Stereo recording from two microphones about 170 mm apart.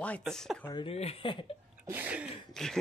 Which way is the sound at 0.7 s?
35° left (ahead or behind).